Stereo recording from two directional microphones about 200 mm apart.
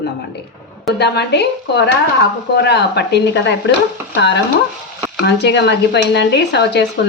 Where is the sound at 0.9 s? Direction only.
55° left (ahead or behind).